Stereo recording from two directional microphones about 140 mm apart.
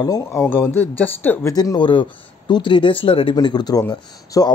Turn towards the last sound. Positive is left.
turn(degrees=30)  # may be behind; listen again after turning